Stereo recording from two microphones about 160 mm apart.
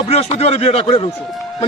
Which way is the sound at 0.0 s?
40° left (ahead or behind).